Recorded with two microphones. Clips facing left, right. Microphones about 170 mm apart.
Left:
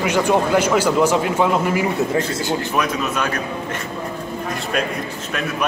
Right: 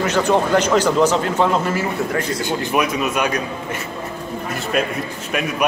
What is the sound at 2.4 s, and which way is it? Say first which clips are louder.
A man's voice: right 1 dB; 10° right (ahead or behind).